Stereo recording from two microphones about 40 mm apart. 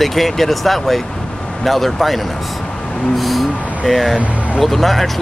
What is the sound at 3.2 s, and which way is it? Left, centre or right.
Speech, centre.